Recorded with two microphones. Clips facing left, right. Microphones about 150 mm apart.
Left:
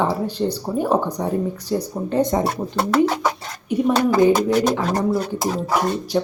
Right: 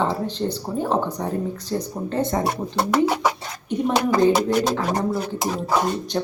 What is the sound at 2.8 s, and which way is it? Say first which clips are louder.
Speech: left 2 dB; 10° right (ahead or behind).